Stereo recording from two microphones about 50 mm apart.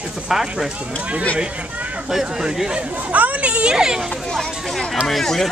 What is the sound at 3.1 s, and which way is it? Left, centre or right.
Speech, right.